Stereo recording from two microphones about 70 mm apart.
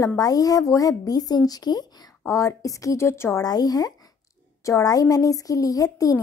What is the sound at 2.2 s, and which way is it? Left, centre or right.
A woman's voice, left.